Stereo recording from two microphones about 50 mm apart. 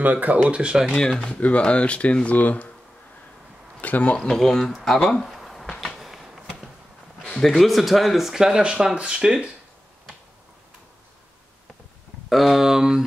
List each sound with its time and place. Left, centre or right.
0.0 s speech: right
0.5 s speech: centre
1.3 s speech: left
3.8 s speech: left
4.2 s speech: centre
4.8 s a sound: centre
7.2 s speech: centre
12.3 s speech: centre